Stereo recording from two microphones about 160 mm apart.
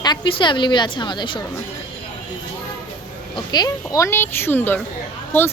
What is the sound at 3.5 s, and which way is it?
A woman's voice, 25° left (ahead or behind).